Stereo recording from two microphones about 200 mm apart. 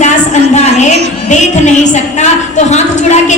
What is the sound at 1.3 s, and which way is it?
A woman's voice, 35° left (ahead or behind).